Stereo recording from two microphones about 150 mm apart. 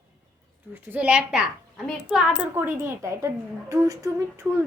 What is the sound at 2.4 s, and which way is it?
A woman's voice, 15° right (ahead or behind).